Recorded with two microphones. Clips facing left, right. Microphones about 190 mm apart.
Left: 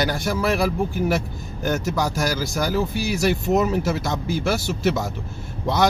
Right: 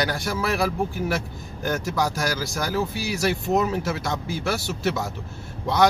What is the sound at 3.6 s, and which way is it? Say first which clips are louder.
Speech: left 3 dB; centre (ahead or behind).